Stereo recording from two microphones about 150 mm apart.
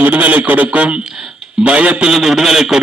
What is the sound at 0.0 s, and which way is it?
A man's voice, 10° right (ahead or behind).